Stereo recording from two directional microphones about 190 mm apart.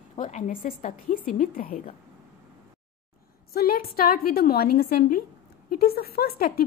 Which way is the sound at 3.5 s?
50° left (ahead or behind).